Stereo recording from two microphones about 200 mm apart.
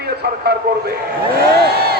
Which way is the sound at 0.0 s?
55° right (ahead or behind).